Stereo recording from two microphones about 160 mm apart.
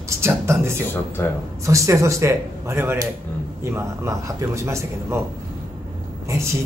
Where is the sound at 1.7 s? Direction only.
20° right (ahead or behind).